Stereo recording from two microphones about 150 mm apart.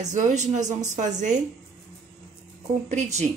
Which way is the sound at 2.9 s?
50° right (ahead or behind).